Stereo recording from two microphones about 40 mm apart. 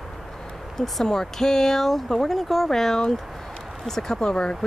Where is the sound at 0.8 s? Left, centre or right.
Centre.